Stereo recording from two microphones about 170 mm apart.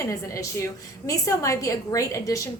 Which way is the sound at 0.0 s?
20° left (ahead or behind).